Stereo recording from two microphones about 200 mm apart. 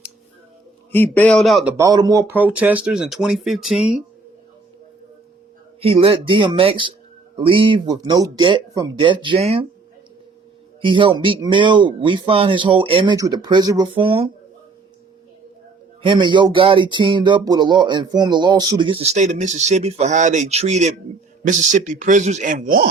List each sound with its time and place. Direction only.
0.9 s speech: 10° left (ahead or behind)
1.7 s speech: 20° right (ahead or behind); by 3.9 s centre (ahead or behind)
5.8 s speech: 25° right (ahead or behind)
10.8 s speech: 25° right (ahead or behind)
16.0 s speech: 25° right (ahead or behind); by 22.9 s 45° right (ahead or behind)